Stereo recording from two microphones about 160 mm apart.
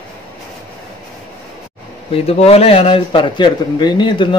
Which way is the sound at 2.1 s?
40° left (ahead or behind).